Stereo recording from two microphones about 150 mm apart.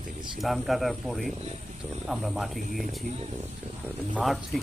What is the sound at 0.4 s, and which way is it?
Speech, centre (ahead or behind).